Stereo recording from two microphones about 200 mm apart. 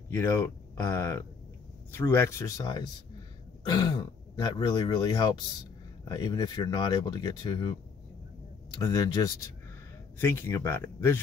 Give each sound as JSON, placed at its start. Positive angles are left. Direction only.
{"t": 0.1, "sound": "speech", "side_deg": 15}
{"t": 8.8, "sound": "speech", "side_deg": 20}